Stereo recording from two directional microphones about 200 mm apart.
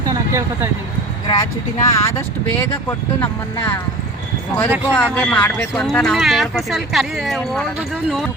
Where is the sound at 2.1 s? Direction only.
10° left (ahead or behind).